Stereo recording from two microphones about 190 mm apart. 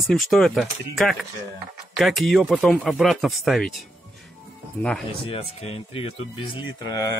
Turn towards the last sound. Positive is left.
turn(degrees=25)  # may be behind; listen again after turning